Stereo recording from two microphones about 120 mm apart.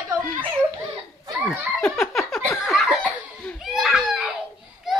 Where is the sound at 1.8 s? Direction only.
5° left (ahead or behind).